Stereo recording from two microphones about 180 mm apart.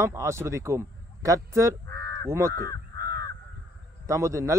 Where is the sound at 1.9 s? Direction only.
20° left (ahead or behind).